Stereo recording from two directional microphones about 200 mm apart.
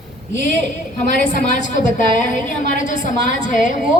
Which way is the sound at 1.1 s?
40° left (ahead or behind).